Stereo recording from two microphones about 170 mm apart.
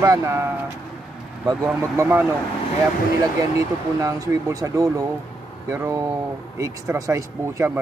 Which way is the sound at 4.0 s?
20° right (ahead or behind).